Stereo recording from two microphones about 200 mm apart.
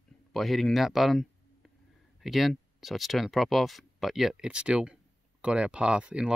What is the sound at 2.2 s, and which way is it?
Speech, centre (ahead or behind).